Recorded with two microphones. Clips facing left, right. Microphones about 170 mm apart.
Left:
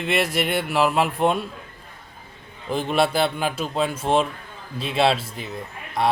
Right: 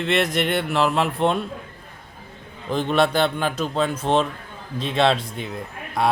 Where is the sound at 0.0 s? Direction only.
10° left (ahead or behind).